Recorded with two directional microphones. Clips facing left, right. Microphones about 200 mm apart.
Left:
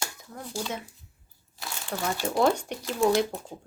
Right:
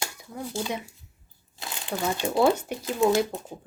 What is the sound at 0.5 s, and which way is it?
Speech, 15° right (ahead or behind).